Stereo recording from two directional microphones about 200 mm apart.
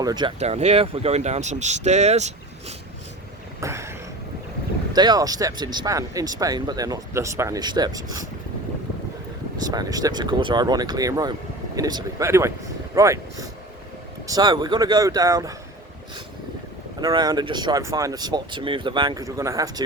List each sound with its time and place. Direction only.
0.0 s speech: 20° right (ahead or behind)
0.3 s speech: 30° right (ahead or behind)
3.6 s a sound: 15° right (ahead or behind)
4.9 s speech: 20° right (ahead or behind)
9.6 s speech: 20° right (ahead or behind)
17.0 s speech: 20° right (ahead or behind)